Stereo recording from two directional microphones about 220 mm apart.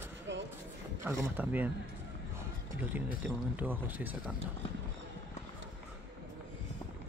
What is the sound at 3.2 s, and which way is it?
Speech, 10° right (ahead or behind).